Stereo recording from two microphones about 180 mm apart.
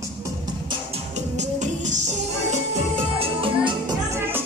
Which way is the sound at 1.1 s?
40° right (ahead or behind).